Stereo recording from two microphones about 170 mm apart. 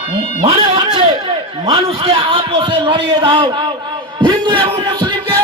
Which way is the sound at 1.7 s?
35° right (ahead or behind).